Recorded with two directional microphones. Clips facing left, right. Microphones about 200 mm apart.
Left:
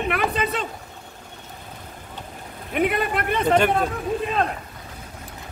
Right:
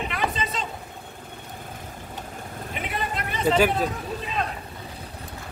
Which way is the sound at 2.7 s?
60° left (ahead or behind).